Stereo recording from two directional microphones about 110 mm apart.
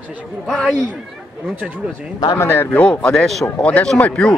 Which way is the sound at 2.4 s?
15° left (ahead or behind).